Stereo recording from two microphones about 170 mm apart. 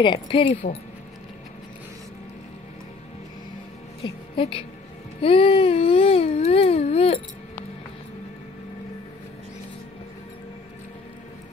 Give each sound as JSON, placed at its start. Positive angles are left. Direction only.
{"t": 0.0, "sound": "baby cry", "side_deg": 30}
{"t": 4.0, "sound": "a woman's voice", "side_deg": 30}
{"t": 5.2, "sound": "baby cry", "side_deg": 30}